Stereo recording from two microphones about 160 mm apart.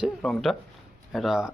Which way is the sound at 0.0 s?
Centre (ahead or behind).